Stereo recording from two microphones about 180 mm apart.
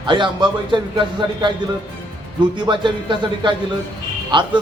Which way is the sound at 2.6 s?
25° right (ahead or behind).